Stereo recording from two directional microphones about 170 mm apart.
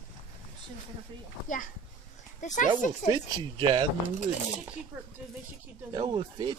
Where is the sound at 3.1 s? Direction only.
20° right (ahead or behind).